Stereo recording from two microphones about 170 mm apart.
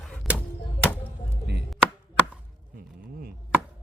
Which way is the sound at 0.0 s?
5° left (ahead or behind).